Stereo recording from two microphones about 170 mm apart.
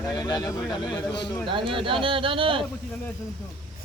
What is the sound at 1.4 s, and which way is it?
Speech, 30° right (ahead or behind).